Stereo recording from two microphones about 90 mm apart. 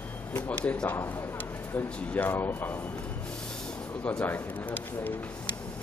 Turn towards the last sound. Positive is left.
turn(degrees=20)  # may be behind; listen again after turning